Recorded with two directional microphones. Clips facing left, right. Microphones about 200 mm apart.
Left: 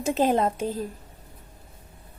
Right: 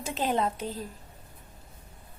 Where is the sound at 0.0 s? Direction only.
45° left (ahead or behind).